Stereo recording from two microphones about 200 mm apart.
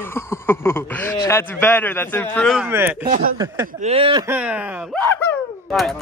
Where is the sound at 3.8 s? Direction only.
30° right (ahead or behind).